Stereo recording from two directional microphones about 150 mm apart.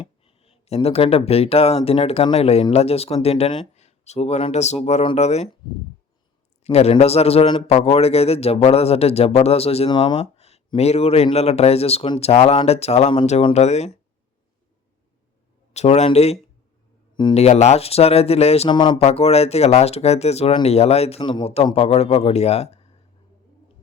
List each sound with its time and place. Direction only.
0.0 s speech: 40° left (ahead or behind)
6.7 s speech: 45° left (ahead or behind)
15.7 s speech: 45° left (ahead or behind)
18.7 s speech: 30° left (ahead or behind)
19.0 s speech: 45° left (ahead or behind)